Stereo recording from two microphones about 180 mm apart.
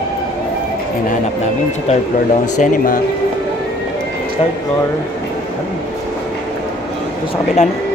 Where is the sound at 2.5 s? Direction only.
50° left (ahead or behind).